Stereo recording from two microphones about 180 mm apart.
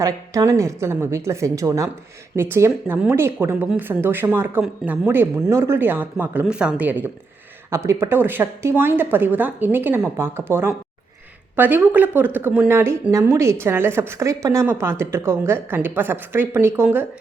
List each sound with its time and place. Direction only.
0.0 s speech: 15° right (ahead or behind)